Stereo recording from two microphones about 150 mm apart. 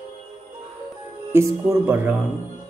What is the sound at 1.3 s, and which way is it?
Speech, 15° right (ahead or behind).